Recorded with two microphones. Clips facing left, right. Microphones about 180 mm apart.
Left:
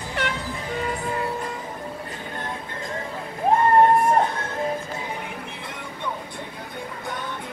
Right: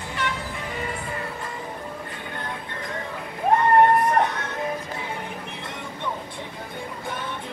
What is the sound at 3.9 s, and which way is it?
Music, 25° left (ahead or behind).